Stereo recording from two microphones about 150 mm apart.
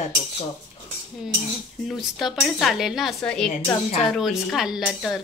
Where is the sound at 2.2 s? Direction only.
Centre (ahead or behind).